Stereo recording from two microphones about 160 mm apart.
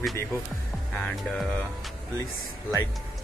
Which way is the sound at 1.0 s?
10° left (ahead or behind).